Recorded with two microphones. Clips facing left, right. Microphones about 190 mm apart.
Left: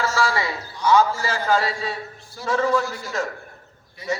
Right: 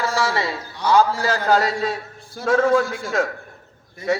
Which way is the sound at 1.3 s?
40° right (ahead or behind).